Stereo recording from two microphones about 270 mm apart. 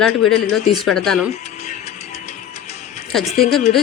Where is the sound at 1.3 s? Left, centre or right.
Left.